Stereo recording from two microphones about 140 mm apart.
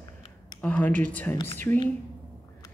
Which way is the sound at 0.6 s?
10° left (ahead or behind).